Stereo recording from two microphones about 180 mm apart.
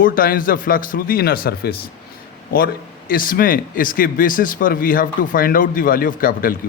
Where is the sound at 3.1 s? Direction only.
50° left (ahead or behind).